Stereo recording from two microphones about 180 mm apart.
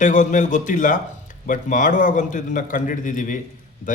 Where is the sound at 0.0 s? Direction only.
45° left (ahead or behind).